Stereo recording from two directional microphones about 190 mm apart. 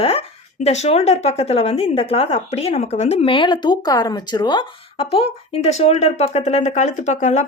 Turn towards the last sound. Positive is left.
turn(degrees=40)  # may be behind; listen again after turning